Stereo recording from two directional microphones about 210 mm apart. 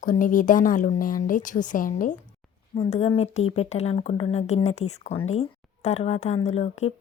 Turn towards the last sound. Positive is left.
turn(degrees=30)  # may be behind; listen again after turning